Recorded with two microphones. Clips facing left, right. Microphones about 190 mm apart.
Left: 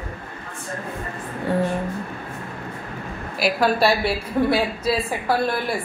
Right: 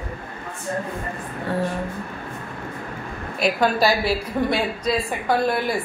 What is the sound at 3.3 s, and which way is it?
A woman's voice, 5° left (ahead or behind).